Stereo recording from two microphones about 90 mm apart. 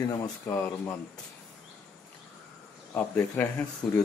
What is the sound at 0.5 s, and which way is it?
Speech, 15° left (ahead or behind).